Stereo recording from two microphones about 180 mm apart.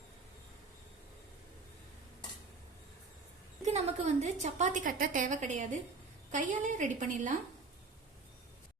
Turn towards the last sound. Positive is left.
turn(degrees=-45)  # may be behind; listen again after turning